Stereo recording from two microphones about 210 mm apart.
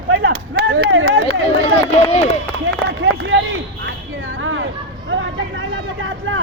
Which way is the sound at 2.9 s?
55° right (ahead or behind).